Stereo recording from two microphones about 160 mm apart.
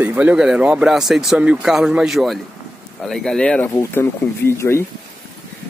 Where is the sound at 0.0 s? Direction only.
10° right (ahead or behind); by 4.8 s 15° left (ahead or behind).